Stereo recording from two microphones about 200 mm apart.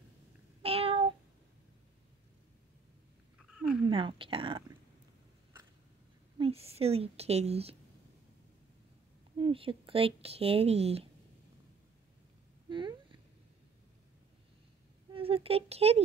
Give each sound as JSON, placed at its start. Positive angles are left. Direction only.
{"t": 0.6, "sound": "child singing", "side_deg": -30}
{"t": 3.9, "sound": "a woman's voice", "side_deg": -25}
{"t": 6.3, "sound": "a woman's voice", "side_deg": -30}
{"t": 9.4, "sound": "speech", "side_deg": -25}
{"t": 12.6, "sound": "a sound", "side_deg": -25}
{"t": 15.1, "sound": "speech", "side_deg": -30}